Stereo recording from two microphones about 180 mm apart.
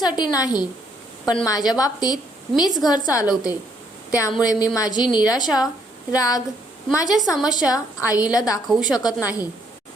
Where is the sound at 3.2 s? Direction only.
5° right (ahead or behind).